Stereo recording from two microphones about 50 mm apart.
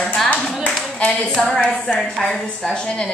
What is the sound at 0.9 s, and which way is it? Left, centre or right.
A woman's voice, centre.